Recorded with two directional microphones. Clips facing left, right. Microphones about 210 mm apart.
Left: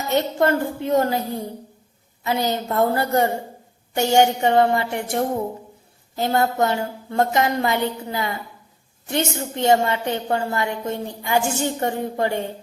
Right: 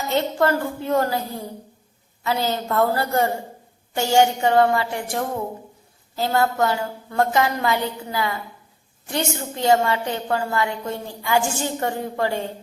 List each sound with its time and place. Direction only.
0.1 s a woman's voice: 20° left (ahead or behind)
2.2 s a woman's voice: 20° left (ahead or behind)